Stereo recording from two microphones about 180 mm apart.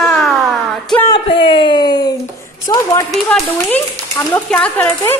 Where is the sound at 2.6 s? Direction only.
20° left (ahead or behind).